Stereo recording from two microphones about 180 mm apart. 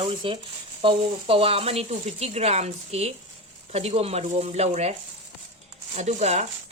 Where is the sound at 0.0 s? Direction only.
30° right (ahead or behind).